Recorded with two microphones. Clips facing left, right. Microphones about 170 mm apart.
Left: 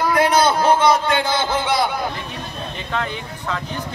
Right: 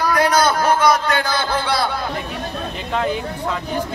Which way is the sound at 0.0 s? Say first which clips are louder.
Even; 25° left (ahead or behind).